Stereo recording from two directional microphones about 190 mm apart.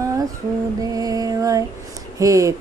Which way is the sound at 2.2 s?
15° right (ahead or behind).